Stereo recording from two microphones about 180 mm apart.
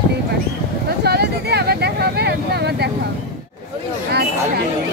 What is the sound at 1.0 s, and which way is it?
Speech, 65° right (ahead or behind).